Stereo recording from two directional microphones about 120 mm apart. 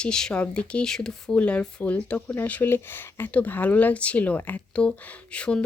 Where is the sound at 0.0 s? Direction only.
5° left (ahead or behind).